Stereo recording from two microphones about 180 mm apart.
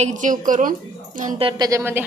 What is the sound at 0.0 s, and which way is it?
A woman's voice, 45° right (ahead or behind).